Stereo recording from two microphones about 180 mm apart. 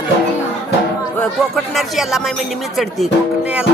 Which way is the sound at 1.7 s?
Centre (ahead or behind).